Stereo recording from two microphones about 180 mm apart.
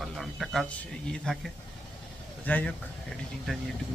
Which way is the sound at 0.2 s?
Centre (ahead or behind).